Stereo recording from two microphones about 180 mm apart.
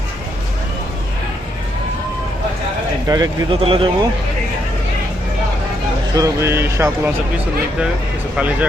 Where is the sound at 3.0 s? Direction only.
20° right (ahead or behind).